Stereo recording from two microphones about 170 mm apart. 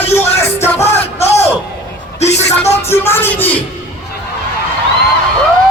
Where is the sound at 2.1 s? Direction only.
40° left (ahead or behind).